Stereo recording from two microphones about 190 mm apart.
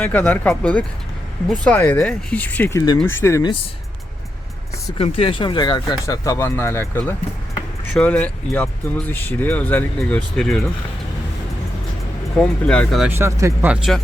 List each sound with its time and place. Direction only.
0.0 s speech: 10° left (ahead or behind)
4.9 s speech: 30° left (ahead or behind); by 10.7 s 5° left (ahead or behind)
12.4 s speech: 5° left (ahead or behind)
13.1 s speech: 15° right (ahead or behind)